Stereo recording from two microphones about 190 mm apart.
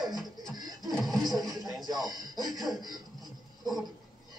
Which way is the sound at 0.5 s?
20° right (ahead or behind).